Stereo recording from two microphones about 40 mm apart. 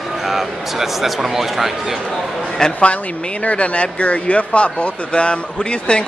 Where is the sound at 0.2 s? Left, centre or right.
Centre.